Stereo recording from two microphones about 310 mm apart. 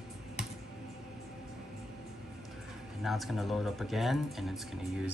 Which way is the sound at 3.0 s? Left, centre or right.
Centre.